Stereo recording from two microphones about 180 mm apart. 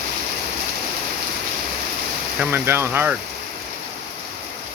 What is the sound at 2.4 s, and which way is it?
Speech, 10° right (ahead or behind).